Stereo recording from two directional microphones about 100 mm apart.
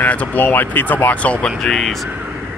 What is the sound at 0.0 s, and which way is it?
Speech, 15° left (ahead or behind).